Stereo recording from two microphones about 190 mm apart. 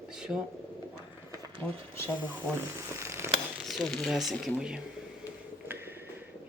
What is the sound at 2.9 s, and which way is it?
Mechanisms, 15° right (ahead or behind).